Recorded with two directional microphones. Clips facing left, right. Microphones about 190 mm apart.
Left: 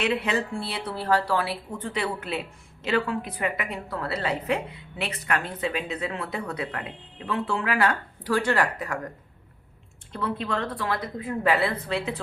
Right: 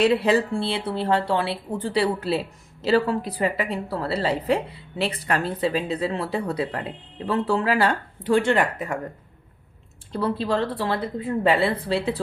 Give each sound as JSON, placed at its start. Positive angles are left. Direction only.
{"t": 0.0, "sound": "speech", "side_deg": -35}
{"t": 10.1, "sound": "speech", "side_deg": -35}